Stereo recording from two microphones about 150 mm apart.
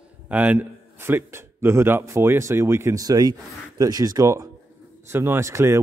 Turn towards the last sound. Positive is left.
turn(degrees=-20)  # may be behind; listen again after turning